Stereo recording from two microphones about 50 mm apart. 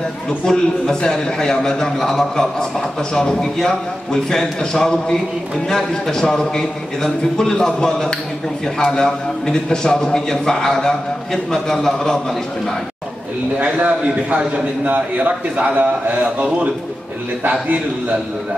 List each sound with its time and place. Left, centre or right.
0.5 s a man's voice: centre
13.6 s a man's voice: right